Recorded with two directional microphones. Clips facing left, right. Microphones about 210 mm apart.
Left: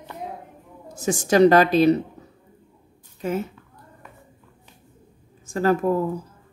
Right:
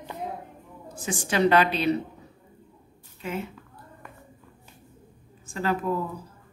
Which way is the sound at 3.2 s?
45° left (ahead or behind).